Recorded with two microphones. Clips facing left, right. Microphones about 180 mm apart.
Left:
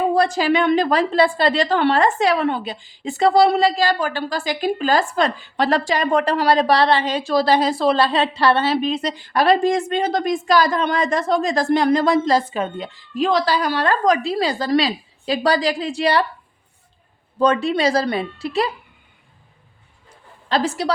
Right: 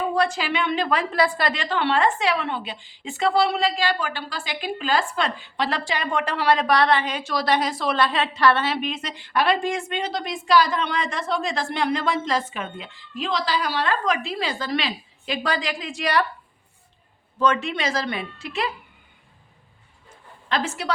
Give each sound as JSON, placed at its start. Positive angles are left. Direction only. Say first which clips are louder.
{"t": 0.1, "sound": "a woman's voice", "louder": "left 6 dB", "side_deg": 40}
{"t": 17.3, "sound": "a woman's voice", "louder": "left 5 dB", "side_deg": 35}
{"t": 20.1, "sound": "a sound", "louder": "left 4 dB", "side_deg": 35}